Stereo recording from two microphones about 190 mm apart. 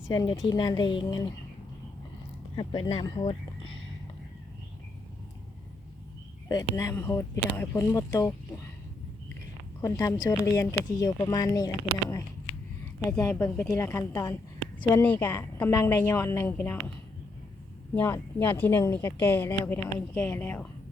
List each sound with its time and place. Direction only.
0.1 s speech: 20° left (ahead or behind)
2.6 s speech: 25° left (ahead or behind)
6.5 s speech: 20° left (ahead or behind)
9.8 s speech: 15° left (ahead or behind)
17.9 s speech: 10° left (ahead or behind)